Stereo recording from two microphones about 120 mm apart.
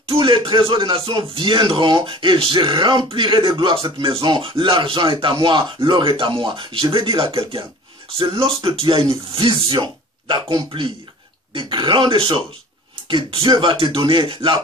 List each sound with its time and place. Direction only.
0.1 s speech: 45° right (ahead or behind)